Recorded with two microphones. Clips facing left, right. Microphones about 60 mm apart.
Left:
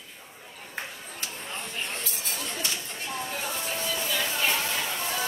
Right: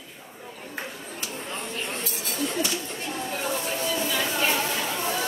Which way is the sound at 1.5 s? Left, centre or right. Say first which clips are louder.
Right 2 dB; centre.